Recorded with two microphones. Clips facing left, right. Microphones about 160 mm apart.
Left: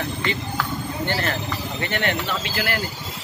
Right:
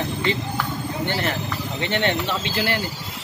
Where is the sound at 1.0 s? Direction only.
15° right (ahead or behind).